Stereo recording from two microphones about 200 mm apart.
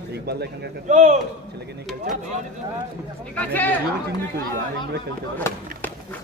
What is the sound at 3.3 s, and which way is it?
Speech, 10° left (ahead or behind).